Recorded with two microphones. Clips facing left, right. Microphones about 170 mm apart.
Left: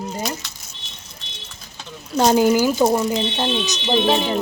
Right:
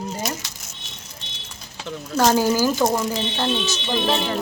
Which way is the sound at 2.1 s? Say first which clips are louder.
Left 3 dB; 20° left (ahead or behind).